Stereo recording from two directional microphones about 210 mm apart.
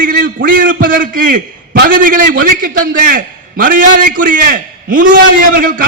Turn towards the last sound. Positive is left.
turn(degrees=-40)  # may be behind; listen again after turning